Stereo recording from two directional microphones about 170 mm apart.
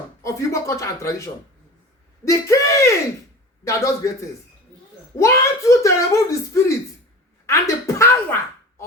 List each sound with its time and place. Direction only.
0.2 s speech: 15° left (ahead or behind)
2.2 s speech: 15° left (ahead or behind)
7.4 s a sound: 15° left (ahead or behind)